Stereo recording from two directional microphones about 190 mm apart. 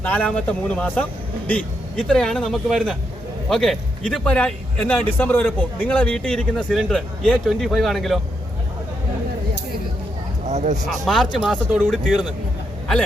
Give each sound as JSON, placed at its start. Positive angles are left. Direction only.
{"t": 0.0, "sound": "speech", "side_deg": 10}
{"t": 10.4, "sound": "speech", "side_deg": -40}
{"t": 11.0, "sound": "speech", "side_deg": 0}